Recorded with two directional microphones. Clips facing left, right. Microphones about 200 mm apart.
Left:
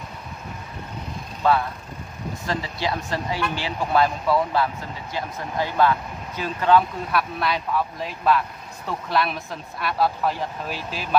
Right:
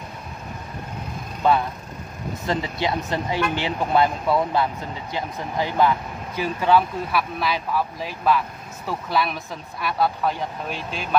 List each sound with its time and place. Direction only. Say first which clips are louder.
2.4 s speech: right 3 dB; 20° right (ahead or behind); by 11.1 s 5° left (ahead or behind)